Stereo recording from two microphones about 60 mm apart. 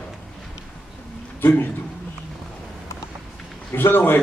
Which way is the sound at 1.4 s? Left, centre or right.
Left.